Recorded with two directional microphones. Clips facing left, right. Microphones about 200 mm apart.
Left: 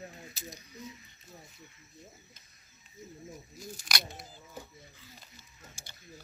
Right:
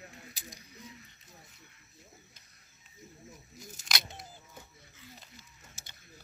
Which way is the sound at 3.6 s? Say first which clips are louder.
Left 1 dB; 20° right (ahead or behind).